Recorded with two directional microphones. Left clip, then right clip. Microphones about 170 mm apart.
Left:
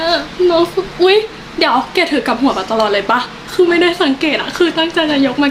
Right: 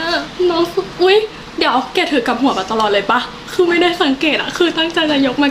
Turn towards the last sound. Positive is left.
turn(degrees=0)  # may be behind; listen again after turning